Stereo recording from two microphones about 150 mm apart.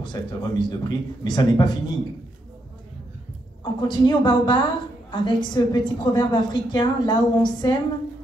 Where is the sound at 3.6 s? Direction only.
30° left (ahead or behind).